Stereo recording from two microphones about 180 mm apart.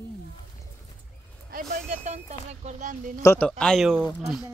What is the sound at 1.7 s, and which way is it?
Speech, 40° right (ahead or behind).